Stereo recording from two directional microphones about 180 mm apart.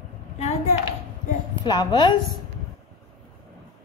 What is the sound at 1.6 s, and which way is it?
Speech, 25° left (ahead or behind).